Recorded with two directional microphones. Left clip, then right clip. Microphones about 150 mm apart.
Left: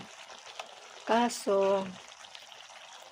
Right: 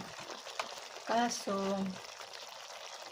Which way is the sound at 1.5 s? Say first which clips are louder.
Left 9 dB; 20° left (ahead or behind).